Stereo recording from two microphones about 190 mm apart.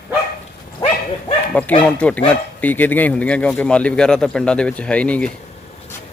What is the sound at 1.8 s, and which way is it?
Speech, 5° left (ahead or behind).